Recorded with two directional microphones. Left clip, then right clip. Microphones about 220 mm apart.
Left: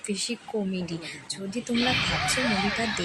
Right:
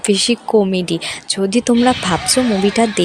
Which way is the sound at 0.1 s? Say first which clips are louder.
Right 17 dB; 35° right (ahead or behind).